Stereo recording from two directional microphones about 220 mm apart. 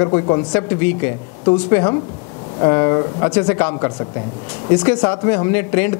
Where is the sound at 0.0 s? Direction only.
20° left (ahead or behind).